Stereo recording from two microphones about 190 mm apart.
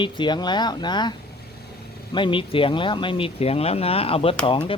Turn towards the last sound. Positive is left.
turn(degrees=25)  # may be behind; listen again after turning